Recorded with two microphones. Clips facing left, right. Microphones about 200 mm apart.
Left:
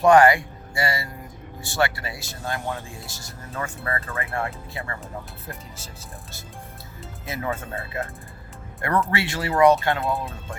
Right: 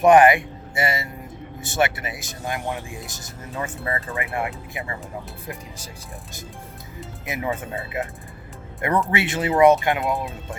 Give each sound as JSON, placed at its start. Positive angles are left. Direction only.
{"t": 0.0, "sound": "speech", "side_deg": -20}
{"t": 7.3, "sound": "speech", "side_deg": -15}